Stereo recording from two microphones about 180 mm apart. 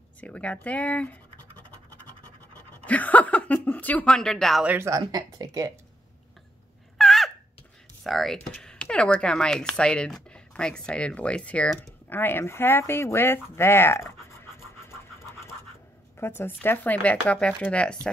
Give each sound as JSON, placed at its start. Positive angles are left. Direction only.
{"t": 0.2, "sound": "speech", "side_deg": 5}
{"t": 2.5, "sound": "speech", "side_deg": 10}
{"t": 4.7, "sound": "speech", "side_deg": -15}
{"t": 7.0, "sound": "a sound", "side_deg": 0}
{"t": 8.0, "sound": "speech", "side_deg": 0}
{"t": 16.2, "sound": "speech", "side_deg": 10}